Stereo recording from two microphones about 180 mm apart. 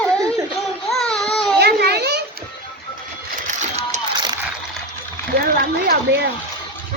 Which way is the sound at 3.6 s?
40° right (ahead or behind).